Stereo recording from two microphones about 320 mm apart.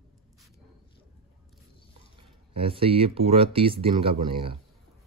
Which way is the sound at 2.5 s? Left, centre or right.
Centre.